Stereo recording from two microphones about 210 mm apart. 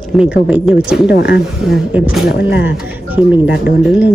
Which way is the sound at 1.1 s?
50° left (ahead or behind).